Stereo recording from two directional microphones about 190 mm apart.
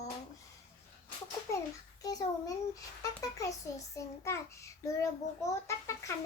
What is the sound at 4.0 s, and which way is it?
A child's voice, 15° left (ahead or behind).